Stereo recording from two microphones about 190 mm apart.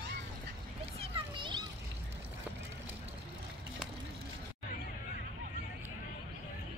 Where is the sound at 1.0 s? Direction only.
25° right (ahead or behind).